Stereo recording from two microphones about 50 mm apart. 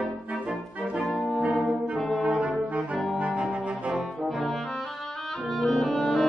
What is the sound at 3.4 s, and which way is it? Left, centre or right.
Cello, right.